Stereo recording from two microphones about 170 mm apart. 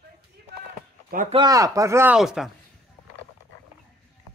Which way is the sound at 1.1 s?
60° right (ahead or behind).